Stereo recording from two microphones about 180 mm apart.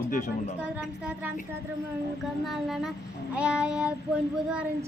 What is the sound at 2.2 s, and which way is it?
Speech, centre (ahead or behind).